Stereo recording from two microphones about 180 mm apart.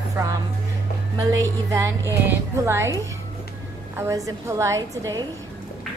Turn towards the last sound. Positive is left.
turn(degrees=-20)  # may be behind; listen again after turning